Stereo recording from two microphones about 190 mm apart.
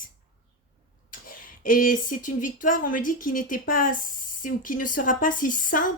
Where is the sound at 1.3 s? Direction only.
45° left (ahead or behind).